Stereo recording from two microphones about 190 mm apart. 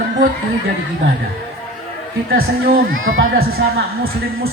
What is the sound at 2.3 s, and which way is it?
Speech, 50° right (ahead or behind).